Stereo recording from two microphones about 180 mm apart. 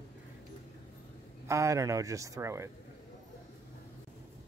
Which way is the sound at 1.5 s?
15° right (ahead or behind).